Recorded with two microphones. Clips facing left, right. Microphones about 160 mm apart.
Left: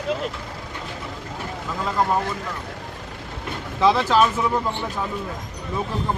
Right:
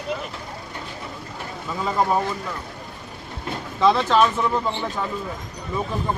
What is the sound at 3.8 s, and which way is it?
Speech, 5° left (ahead or behind).